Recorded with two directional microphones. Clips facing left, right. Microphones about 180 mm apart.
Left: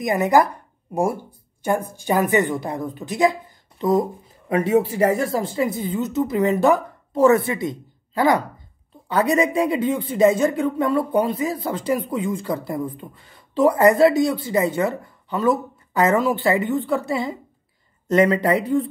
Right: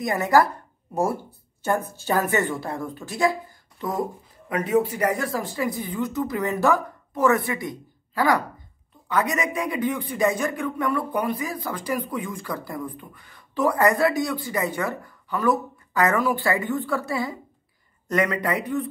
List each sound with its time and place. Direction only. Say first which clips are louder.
0.0 s speech: left 2 dB; 20° left (ahead or behind)
1.9 s speech: left 4 dB; 15° left (ahead or behind)